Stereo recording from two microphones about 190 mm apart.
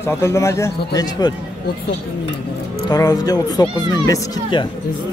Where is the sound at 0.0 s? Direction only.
15° left (ahead or behind).